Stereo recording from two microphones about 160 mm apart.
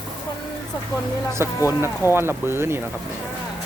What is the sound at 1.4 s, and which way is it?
Speech, 15° right (ahead or behind).